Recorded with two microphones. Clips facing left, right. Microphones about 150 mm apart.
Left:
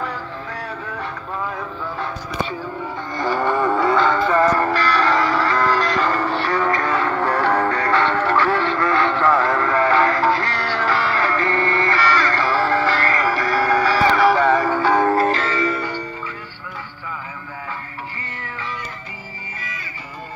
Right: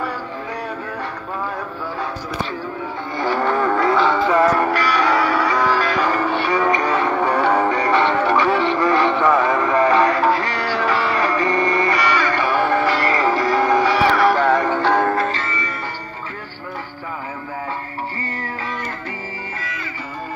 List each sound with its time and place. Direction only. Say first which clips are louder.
3.2 s music: right 1 dB; centre (ahead or behind)
15.4 s sitar: left 6 dB; 90° left